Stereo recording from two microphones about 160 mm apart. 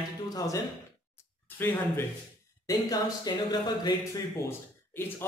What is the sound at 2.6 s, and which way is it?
Speech, 25° left (ahead or behind).